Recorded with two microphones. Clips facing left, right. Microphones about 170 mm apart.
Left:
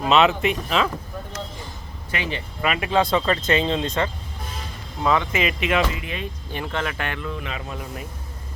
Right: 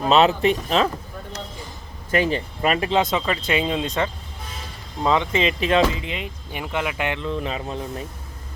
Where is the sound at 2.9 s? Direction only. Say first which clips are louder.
Left 1 dB; 20° right (ahead or behind).